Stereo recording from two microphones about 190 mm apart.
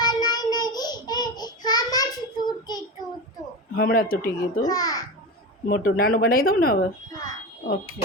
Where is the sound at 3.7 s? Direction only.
50° left (ahead or behind).